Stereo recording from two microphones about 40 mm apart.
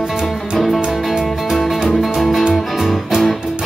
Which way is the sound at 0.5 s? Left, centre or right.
Centre.